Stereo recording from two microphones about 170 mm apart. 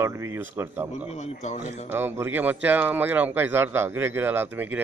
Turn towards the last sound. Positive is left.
turn(degrees=-10)  # may be behind; listen again after turning